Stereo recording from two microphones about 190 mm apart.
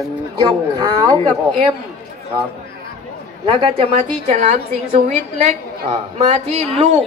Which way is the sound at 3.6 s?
35° right (ahead or behind).